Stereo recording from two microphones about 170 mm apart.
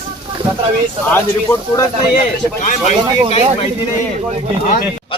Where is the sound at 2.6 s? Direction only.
45° left (ahead or behind).